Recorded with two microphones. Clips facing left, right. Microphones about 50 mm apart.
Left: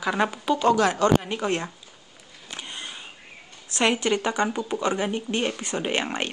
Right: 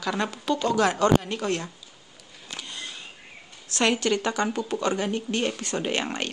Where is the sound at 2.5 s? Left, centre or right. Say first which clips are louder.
Left 1 dB; left.